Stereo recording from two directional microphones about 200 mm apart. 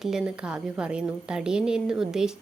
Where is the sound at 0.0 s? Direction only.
5° right (ahead or behind).